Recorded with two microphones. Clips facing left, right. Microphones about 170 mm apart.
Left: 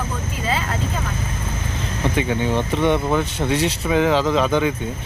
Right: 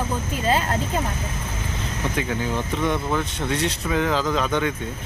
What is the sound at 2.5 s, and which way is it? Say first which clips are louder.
Speech: left 5 dB; 30° left (ahead or behind).